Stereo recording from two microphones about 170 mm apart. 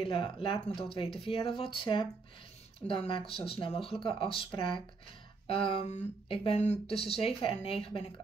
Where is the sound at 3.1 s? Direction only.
30° left (ahead or behind).